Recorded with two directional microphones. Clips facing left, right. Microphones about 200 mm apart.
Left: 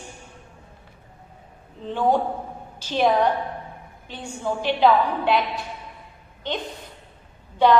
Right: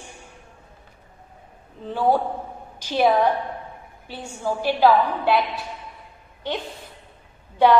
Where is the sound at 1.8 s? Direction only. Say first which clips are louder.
Even; 5° right (ahead or behind).